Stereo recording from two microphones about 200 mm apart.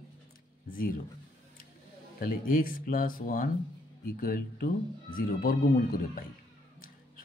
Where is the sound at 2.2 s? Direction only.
45° left (ahead or behind).